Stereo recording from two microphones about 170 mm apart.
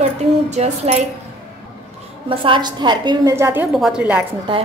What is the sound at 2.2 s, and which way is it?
A woman's voice, 30° right (ahead or behind).